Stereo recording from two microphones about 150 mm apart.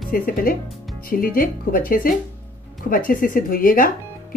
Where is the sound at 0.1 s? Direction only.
70° left (ahead or behind).